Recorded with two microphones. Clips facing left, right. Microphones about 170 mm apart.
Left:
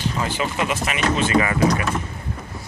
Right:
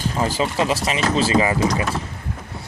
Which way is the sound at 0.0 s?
35° right (ahead or behind).